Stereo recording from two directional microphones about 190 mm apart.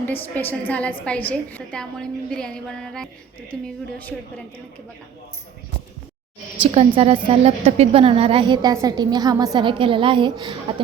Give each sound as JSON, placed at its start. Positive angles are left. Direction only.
{"t": 0.0, "sound": "a woman's voice", "side_deg": 10}
{"t": 6.6, "sound": "a woman's voice", "side_deg": -30}